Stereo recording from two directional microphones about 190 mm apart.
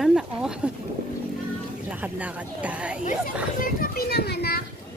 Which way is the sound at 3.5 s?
50° left (ahead or behind).